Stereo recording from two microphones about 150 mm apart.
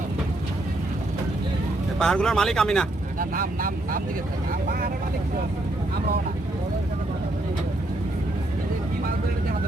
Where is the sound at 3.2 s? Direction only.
70° right (ahead or behind).